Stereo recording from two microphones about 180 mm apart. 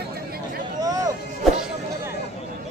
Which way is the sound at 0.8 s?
20° right (ahead or behind).